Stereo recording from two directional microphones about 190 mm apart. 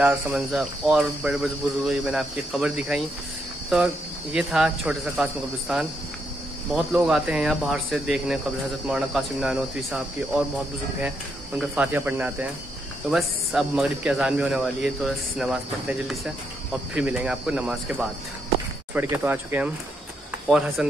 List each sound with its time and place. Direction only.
0.0 s speech: 5° right (ahead or behind)